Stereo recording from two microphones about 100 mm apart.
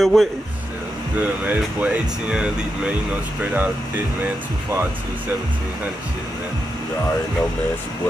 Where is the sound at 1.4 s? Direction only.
15° right (ahead or behind).